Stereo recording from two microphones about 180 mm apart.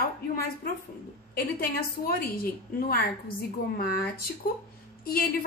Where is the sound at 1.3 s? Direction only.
55° left (ahead or behind).